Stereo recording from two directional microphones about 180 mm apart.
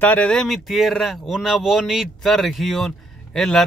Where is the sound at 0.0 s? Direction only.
5° left (ahead or behind).